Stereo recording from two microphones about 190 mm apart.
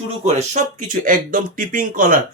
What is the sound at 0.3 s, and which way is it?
Speech, 40° right (ahead or behind).